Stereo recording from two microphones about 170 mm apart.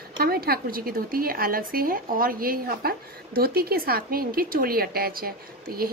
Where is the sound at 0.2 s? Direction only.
65° right (ahead or behind).